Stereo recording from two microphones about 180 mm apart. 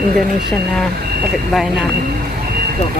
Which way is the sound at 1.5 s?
Centre (ahead or behind).